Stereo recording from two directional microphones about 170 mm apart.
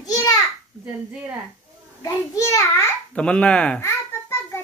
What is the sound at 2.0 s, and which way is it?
Speech, 20° left (ahead or behind).